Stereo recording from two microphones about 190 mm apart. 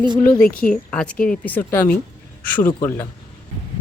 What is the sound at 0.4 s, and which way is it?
Speech, 50° left (ahead or behind).